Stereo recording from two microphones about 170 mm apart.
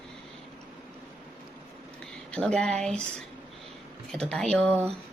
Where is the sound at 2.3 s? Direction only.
5° left (ahead or behind).